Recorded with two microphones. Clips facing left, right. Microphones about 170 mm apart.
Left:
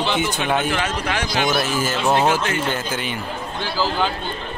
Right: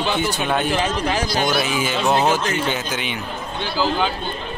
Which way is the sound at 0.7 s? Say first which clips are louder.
Right 2 dB; 30° right (ahead or behind).